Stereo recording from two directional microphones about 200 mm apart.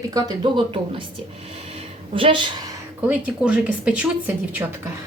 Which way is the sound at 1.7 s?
25° right (ahead or behind).